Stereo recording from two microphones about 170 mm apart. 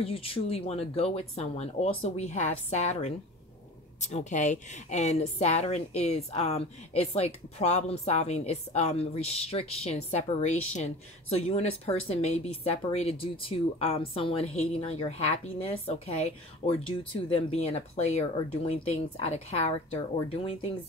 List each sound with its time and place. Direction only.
0.0 s a woman's voice: 35° left (ahead or behind)